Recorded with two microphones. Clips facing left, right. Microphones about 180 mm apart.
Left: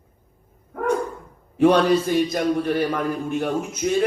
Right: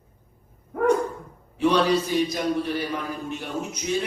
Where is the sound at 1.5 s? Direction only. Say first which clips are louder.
Left 4 dB; 50° left (ahead or behind).